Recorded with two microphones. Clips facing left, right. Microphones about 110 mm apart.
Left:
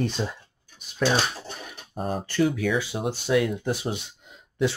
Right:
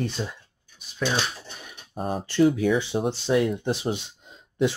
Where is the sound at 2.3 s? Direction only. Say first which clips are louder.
Right 4 dB; 30° right (ahead or behind).